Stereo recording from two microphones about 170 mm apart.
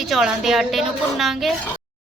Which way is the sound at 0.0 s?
Centre (ahead or behind).